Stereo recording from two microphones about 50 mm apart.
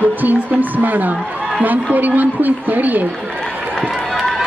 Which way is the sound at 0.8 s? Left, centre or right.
Right.